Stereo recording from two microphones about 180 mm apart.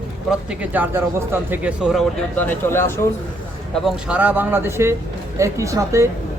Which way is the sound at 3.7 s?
5° right (ahead or behind).